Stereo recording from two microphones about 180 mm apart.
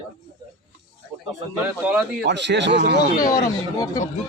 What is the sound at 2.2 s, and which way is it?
Speech, 75° right (ahead or behind).